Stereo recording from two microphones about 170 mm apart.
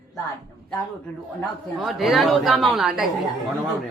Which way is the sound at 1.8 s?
Centre (ahead or behind).